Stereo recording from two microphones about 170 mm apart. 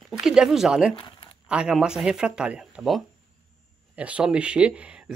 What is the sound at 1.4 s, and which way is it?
Speech, 5° right (ahead or behind).